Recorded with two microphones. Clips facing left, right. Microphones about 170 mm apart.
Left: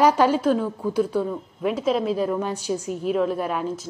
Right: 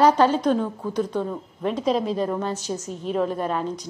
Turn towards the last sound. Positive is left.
turn(degrees=10)  # may be behind; listen again after turning